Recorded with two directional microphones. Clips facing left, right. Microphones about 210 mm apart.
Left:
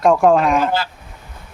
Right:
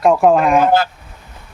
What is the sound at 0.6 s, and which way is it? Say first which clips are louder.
Speech: right 6 dB; 50° right (ahead or behind).